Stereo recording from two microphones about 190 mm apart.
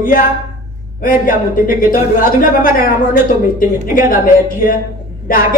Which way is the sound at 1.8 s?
45° left (ahead or behind).